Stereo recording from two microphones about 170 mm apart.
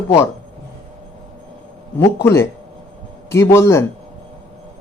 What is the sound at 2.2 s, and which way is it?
A man's voice, 15° left (ahead or behind).